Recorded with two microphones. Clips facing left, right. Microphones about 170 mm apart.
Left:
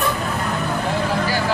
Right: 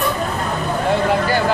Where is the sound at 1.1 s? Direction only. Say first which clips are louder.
Right 4 dB; 55° right (ahead or behind).